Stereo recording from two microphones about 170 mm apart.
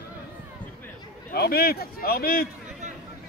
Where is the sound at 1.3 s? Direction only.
65° left (ahead or behind).